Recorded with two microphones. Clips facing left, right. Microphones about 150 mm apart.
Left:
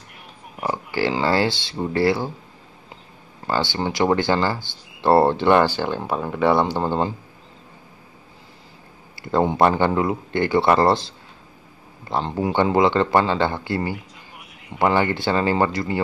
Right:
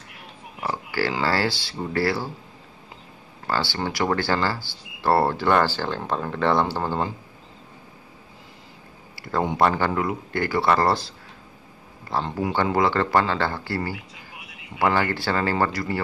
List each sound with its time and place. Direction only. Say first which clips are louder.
0.6 s speech: left 3 dB; 20° left (ahead or behind)
3.4 s speech: left 3 dB; 20° left (ahead or behind)
9.2 s speech: left 4 dB; 25° left (ahead or behind)